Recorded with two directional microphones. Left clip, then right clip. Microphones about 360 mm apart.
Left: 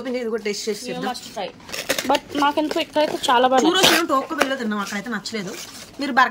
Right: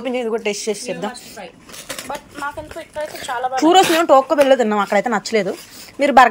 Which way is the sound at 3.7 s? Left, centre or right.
Centre.